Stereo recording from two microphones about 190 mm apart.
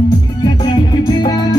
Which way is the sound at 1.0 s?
20° left (ahead or behind).